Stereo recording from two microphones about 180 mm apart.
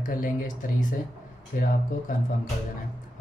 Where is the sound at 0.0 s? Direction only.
50° left (ahead or behind).